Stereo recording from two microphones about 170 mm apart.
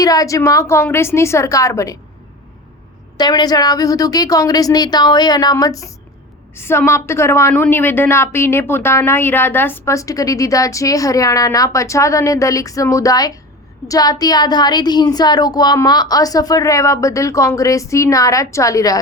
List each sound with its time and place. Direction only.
0.0 s a woman's voice: 20° left (ahead or behind)
3.2 s a woman's voice: 25° left (ahead or behind)